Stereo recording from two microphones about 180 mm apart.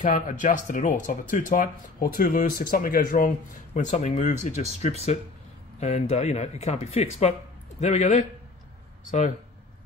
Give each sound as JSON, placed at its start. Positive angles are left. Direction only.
{"t": 0.0, "sound": "speech", "side_deg": 45}